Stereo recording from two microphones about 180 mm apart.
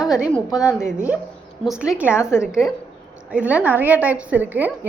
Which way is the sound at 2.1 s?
15° left (ahead or behind).